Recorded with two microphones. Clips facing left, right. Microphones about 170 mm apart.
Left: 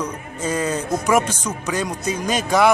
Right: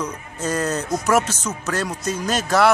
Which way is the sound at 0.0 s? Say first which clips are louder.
Left 1 dB; 10° left (ahead or behind).